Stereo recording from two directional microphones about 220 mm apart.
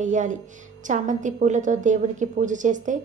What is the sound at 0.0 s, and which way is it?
A woman's voice, 35° right (ahead or behind).